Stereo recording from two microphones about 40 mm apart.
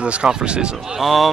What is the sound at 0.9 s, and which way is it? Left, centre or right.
Speech, centre.